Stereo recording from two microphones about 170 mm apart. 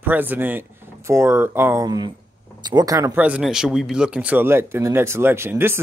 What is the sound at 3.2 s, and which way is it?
Speech, 5° right (ahead or behind).